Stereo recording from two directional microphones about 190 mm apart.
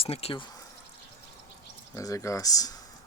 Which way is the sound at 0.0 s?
30° left (ahead or behind).